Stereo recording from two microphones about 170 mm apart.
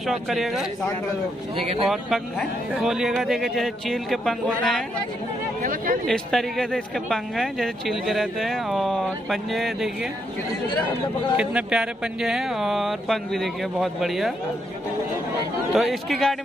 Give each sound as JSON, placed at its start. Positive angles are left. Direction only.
{"t": 0.0, "sound": "speech", "side_deg": 0}
{"t": 1.9, "sound": "speech", "side_deg": 0}
{"t": 5.6, "sound": "speech", "side_deg": -55}
{"t": 6.0, "sound": "speech", "side_deg": 0}
{"t": 11.3, "sound": "speech", "side_deg": -5}
{"t": 15.7, "sound": "speech", "side_deg": 0}